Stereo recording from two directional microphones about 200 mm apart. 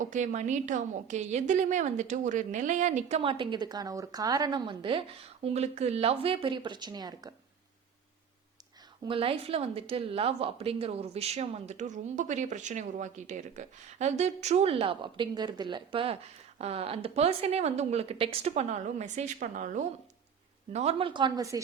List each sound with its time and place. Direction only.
0.0 s a woman's voice: 40° right (ahead or behind); by 7.3 s 20° right (ahead or behind)
9.0 s a woman's voice: 25° right (ahead or behind)
20.7 s a woman's voice: 30° right (ahead or behind)